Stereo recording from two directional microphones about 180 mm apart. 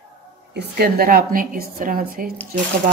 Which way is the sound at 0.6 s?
60° right (ahead or behind).